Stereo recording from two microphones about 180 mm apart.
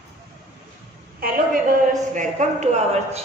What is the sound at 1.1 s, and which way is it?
A man's voice, 55° right (ahead or behind).